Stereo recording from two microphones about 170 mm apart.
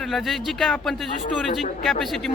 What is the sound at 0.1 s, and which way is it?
A man's voice, centre (ahead or behind).